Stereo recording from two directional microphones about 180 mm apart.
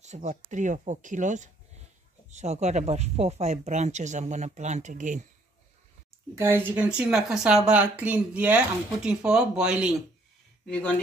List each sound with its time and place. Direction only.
0.0 s speech: 40° right (ahead or behind)
6.3 s speech: 15° right (ahead or behind)
10.7 s speech: 10° left (ahead or behind)